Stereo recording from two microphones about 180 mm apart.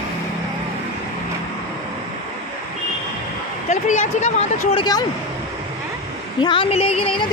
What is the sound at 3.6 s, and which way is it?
Speech, 40° left (ahead or behind).